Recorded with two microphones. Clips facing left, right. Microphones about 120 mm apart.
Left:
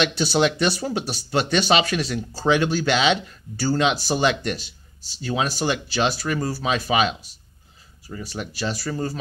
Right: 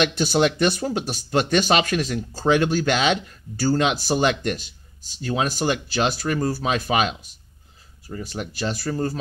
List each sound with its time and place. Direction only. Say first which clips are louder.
0.0 s speech: right 1 dB; 45° right (ahead or behind)